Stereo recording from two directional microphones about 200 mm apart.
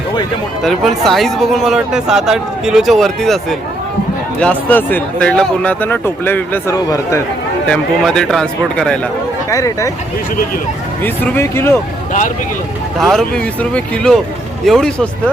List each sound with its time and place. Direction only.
0.6 s speech: centre (ahead or behind); by 7.2 s 15° left (ahead or behind)
7.7 s speech: 5° left (ahead or behind)
9.5 s speech: 15° left (ahead or behind)
11.0 s speech: 10° left (ahead or behind)
13.0 s speech: centre (ahead or behind)